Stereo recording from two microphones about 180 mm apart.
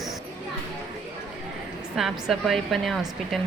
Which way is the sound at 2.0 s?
Centre (ahead or behind).